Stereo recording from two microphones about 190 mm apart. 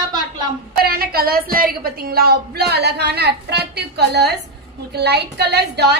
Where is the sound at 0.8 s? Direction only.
55° right (ahead or behind).